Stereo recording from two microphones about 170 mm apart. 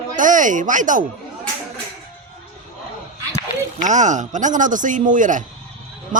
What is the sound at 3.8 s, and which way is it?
Speech, 45° right (ahead or behind).